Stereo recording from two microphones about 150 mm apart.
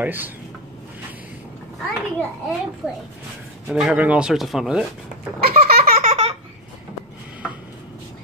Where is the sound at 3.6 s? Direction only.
5° right (ahead or behind).